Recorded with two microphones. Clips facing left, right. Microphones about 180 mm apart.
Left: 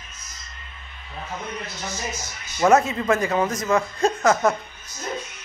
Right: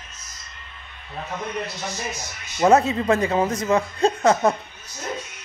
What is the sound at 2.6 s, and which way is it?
Speech, 30° right (ahead or behind).